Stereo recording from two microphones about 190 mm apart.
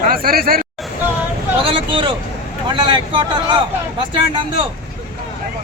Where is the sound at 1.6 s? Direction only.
25° right (ahead or behind).